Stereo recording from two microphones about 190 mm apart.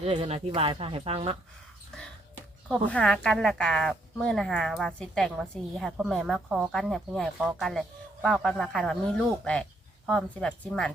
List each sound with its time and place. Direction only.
0.0 s speech: 35° right (ahead or behind)
2.6 s speech: 5° left (ahead or behind)